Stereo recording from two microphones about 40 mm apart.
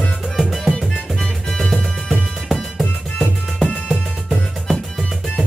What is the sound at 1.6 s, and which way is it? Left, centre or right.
Music, centre.